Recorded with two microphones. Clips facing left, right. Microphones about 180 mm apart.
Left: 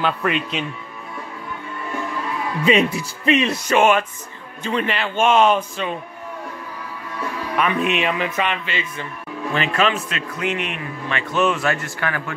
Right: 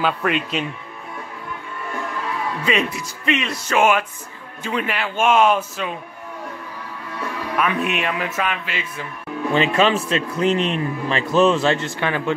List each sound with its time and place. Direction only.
0.0 s speech: centre (ahead or behind)
2.6 s speech: 30° left (ahead or behind)
3.7 s speech: 5° right (ahead or behind)
7.5 s speech: centre (ahead or behind)
9.5 s speech: 25° right (ahead or behind)